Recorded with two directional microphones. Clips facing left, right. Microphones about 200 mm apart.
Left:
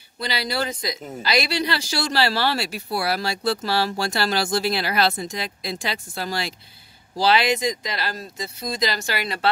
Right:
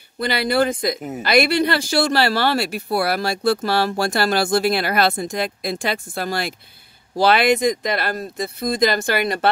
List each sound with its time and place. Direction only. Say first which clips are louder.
0.2 s speech: right 7 dB; 55° right (ahead or behind)